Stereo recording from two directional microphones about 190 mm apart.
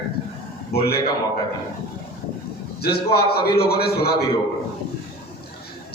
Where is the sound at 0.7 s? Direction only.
55° left (ahead or behind).